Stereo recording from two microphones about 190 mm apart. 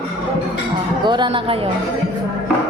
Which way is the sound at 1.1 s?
25° right (ahead or behind).